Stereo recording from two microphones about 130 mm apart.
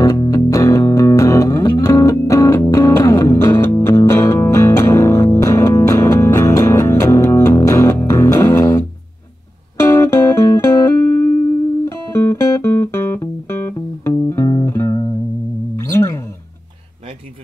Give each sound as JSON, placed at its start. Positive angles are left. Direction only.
{"t": 0.0, "sound": "music", "side_deg": 30}